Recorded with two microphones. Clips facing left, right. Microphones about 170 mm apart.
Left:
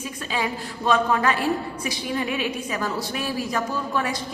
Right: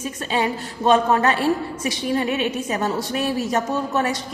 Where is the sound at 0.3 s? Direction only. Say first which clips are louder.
Right 4 dB; 35° right (ahead or behind).